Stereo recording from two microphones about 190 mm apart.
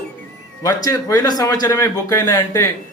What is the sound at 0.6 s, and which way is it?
A man's voice, 15° left (ahead or behind).